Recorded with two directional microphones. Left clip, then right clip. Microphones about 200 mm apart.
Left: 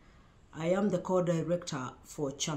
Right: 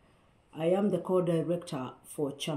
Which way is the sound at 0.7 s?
10° left (ahead or behind).